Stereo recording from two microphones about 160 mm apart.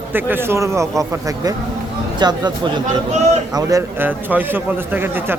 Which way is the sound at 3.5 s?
15° right (ahead or behind).